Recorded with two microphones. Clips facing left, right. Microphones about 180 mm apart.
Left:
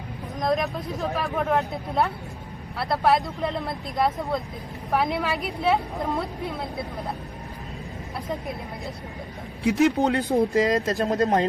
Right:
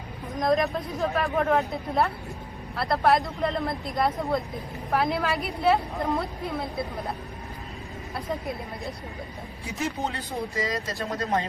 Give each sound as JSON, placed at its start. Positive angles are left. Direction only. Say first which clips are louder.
{"t": 0.3, "sound": "speech", "louder": "right 1 dB", "side_deg": 0}
{"t": 9.6, "sound": "speech", "louder": "left 11 dB", "side_deg": 75}